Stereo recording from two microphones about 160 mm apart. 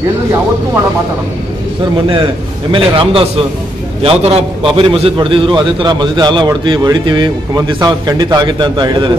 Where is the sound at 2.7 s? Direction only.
35° right (ahead or behind).